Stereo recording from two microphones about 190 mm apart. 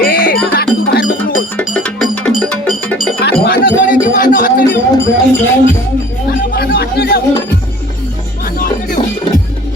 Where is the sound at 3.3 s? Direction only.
55° left (ahead or behind).